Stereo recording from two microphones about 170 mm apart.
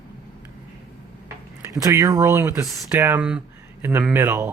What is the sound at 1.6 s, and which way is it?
Speech, 20° right (ahead or behind).